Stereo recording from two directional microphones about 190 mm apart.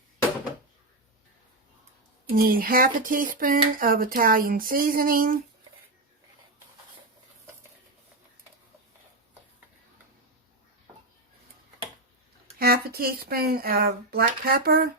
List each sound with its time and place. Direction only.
2.3 s speech: 50° right (ahead or behind)
12.5 s speech: 50° right (ahead or behind)